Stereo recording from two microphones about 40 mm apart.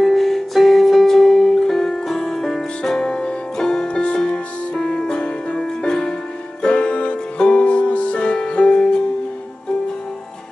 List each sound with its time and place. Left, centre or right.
0.0 s music: centre; by 8.8 s left